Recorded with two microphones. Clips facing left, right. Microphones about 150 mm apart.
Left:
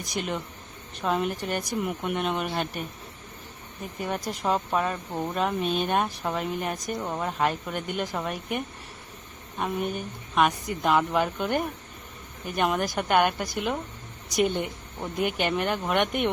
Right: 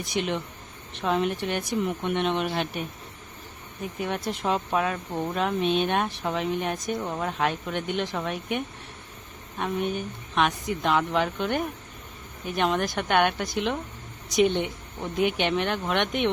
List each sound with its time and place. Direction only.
0.0 s speech: centre (ahead or behind)
4.0 s speech: centre (ahead or behind)
9.9 s speech: centre (ahead or behind)